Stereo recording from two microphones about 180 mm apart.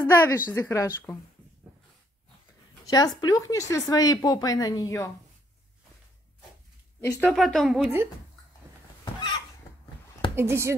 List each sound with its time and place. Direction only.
0.0 s a woman's voice: 15° left (ahead or behind)
2.8 s speech: 20° left (ahead or behind)
7.0 s a woman's voice: 15° left (ahead or behind)
7.2 s a woman's voice: centre (ahead or behind)
9.0 s fowl: 25° left (ahead or behind)
10.3 s speech: 15° right (ahead or behind)